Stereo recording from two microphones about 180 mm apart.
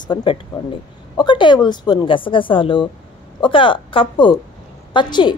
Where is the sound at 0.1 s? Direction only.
30° left (ahead or behind).